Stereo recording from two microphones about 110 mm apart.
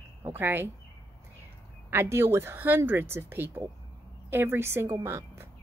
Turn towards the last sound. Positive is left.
turn(degrees=-20)  # may be behind; listen again after turning